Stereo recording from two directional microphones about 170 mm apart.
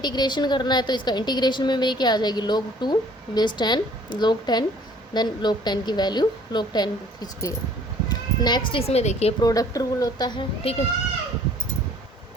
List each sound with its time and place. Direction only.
0.0 s a woman's voice: 25° left (ahead or behind)
9.4 s a woman's voice: 20° left (ahead or behind)